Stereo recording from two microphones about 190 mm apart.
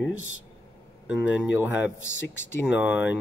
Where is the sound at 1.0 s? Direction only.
10° right (ahead or behind).